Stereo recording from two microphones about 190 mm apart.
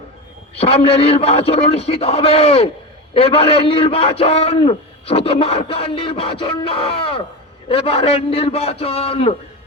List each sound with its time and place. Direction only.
0.6 s a man's voice: 30° left (ahead or behind)